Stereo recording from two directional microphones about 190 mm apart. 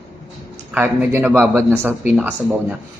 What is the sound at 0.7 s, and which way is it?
Speech, 10° right (ahead or behind).